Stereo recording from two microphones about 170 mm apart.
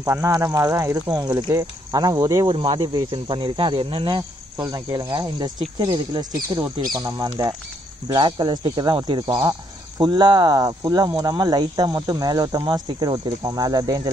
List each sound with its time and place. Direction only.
0.0 s speech: 20° right (ahead or behind)